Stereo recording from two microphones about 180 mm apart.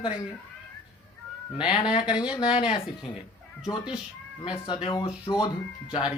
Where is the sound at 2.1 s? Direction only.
5° right (ahead or behind).